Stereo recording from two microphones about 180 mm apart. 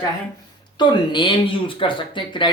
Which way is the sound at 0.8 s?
25° left (ahead or behind).